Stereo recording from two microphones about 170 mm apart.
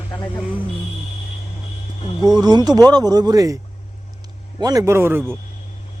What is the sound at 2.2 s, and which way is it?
Speech, 25° right (ahead or behind).